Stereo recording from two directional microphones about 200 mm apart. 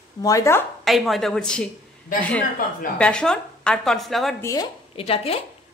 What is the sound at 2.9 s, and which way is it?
A woman's voice, 5° left (ahead or behind).